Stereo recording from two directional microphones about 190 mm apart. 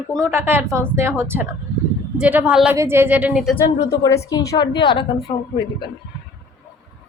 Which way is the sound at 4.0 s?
15° left (ahead or behind).